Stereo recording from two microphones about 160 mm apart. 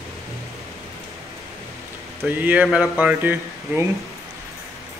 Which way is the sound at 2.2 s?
10° right (ahead or behind).